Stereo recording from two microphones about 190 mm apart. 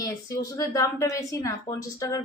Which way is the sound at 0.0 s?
20° left (ahead or behind).